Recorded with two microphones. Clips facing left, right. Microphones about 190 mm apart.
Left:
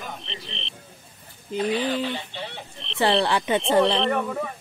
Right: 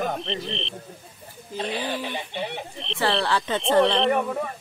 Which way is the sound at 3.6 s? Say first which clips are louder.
Right 2 dB; centre (ahead or behind).